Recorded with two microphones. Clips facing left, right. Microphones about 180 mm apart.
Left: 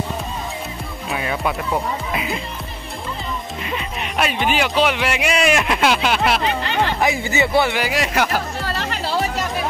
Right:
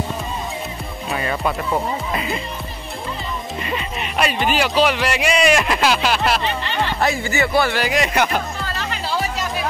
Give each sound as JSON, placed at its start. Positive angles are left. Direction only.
{"t": 1.1, "sound": "speech", "side_deg": 5}
{"t": 3.6, "sound": "speech", "side_deg": 0}
{"t": 7.0, "sound": "speech", "side_deg": 20}
{"t": 7.8, "sound": "speech", "side_deg": 5}